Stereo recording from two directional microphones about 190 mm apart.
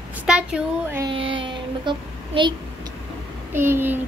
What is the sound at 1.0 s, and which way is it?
A child's voice, 25° right (ahead or behind).